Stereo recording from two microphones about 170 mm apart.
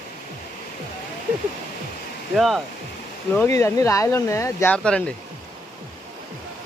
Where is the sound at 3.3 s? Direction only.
15° left (ahead or behind).